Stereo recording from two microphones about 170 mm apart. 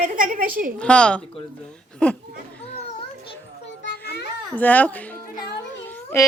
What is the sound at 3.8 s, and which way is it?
Children playing, 75° left (ahead or behind).